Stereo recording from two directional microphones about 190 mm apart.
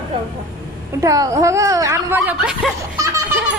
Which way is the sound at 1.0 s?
15° right (ahead or behind).